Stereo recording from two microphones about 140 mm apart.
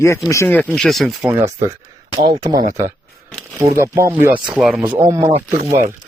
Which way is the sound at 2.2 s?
30° right (ahead or behind).